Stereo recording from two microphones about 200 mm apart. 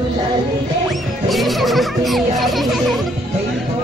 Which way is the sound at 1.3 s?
Centre (ahead or behind).